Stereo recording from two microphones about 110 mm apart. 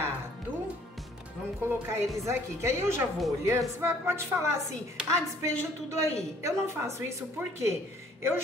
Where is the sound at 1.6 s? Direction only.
20° right (ahead or behind).